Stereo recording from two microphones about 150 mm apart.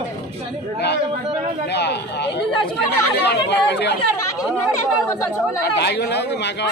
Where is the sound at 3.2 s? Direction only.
90° left.